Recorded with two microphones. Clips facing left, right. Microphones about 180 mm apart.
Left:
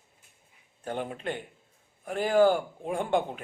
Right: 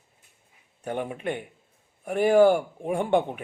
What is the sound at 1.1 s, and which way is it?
Speech, 15° right (ahead or behind).